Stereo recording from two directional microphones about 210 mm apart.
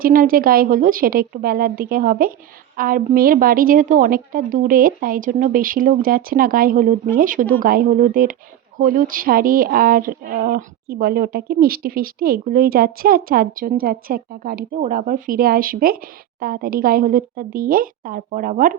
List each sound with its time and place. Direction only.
0.0 s a woman's voice: 45° right (ahead or behind)